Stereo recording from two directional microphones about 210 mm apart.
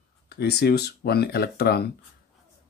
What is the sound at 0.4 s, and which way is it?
Speech, 50° left (ahead or behind).